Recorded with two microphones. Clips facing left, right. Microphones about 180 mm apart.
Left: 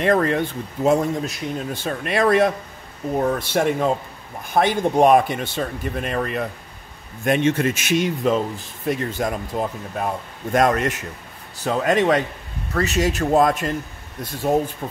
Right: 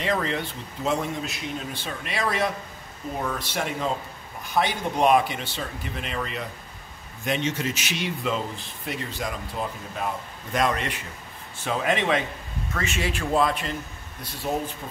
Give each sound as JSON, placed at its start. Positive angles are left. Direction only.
{"t": 0.0, "sound": "speech", "side_deg": 55}